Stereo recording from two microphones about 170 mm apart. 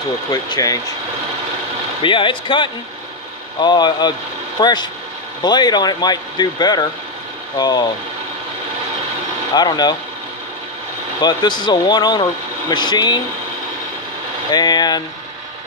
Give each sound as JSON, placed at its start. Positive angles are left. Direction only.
{"t": 0.3, "sound": "speech", "side_deg": 20}
{"t": 2.0, "sound": "speech", "side_deg": 30}
{"t": 9.5, "sound": "speech", "side_deg": 25}
{"t": 11.1, "sound": "speech", "side_deg": 25}
{"t": 14.5, "sound": "speech", "side_deg": 25}